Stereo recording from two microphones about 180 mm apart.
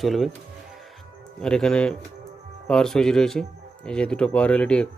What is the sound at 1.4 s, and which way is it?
Speech, 5° left (ahead or behind).